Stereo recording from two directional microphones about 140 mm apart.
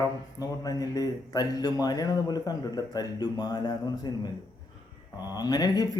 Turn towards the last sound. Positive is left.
turn(degrees=30)  # may be behind; listen again after turning